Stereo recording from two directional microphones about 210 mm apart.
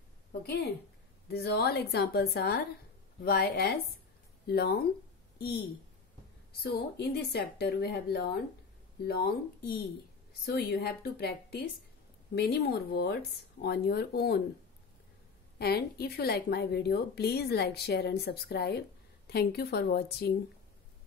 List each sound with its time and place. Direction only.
1.3 s a woman's voice: 50° left (ahead or behind)
6.6 s a woman's voice: 50° left (ahead or behind)
15.6 s a woman's voice: 50° left (ahead or behind)